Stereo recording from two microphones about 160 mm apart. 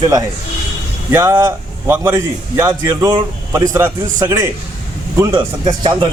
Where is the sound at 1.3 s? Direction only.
20° right (ahead or behind).